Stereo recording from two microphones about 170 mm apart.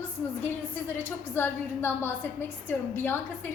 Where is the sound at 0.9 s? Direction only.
15° left (ahead or behind).